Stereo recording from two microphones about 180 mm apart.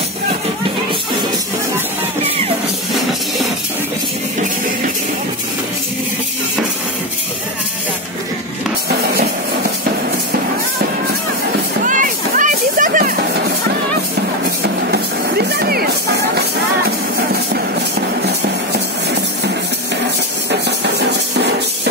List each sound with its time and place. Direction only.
11.8 s music: 45° right (ahead or behind)
14.6 s music: 65° right (ahead or behind)
18.2 s music: 65° right (ahead or behind)